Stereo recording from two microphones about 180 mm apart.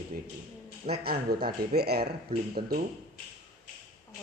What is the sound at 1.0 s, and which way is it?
Speech, 60° right (ahead or behind).